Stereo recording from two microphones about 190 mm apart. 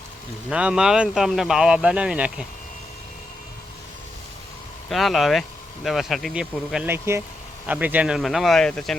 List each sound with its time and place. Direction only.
0.5 s speech: 5° right (ahead or behind)
4.9 s speech: centre (ahead or behind)